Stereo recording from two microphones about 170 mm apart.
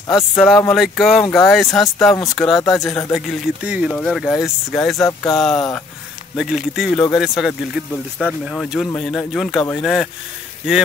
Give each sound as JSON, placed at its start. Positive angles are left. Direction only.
{"t": 0.1, "sound": "speech", "side_deg": 0}
{"t": 4.9, "sound": "speech", "side_deg": 20}
{"t": 5.4, "sound": "speech", "side_deg": 5}